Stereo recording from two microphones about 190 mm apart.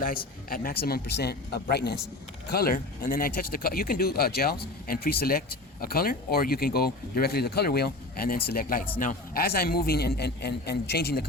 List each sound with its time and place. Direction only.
0.0 s speech: 50° left (ahead or behind)